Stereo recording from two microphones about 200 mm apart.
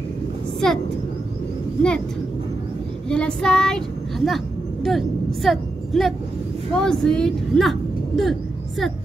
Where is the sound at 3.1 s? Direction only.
5° left (ahead or behind).